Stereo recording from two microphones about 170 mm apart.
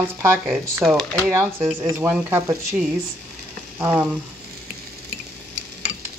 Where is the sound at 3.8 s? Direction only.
10° right (ahead or behind).